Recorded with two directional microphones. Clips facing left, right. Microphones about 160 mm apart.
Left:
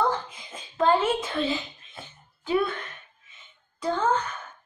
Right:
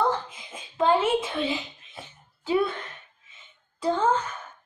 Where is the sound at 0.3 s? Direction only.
5° right (ahead or behind).